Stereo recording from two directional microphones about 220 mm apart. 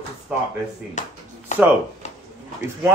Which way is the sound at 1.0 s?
35° left (ahead or behind).